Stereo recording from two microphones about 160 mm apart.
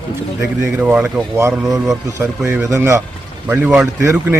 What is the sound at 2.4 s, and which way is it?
Speech, 5° right (ahead or behind).